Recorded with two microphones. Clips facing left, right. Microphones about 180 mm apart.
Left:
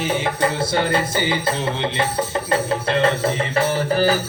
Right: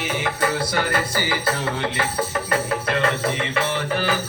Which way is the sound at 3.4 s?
35° left (ahead or behind).